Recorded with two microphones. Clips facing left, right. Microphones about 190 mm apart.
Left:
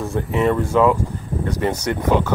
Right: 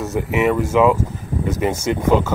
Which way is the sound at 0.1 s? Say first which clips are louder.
Right 1 dB; 10° right (ahead or behind).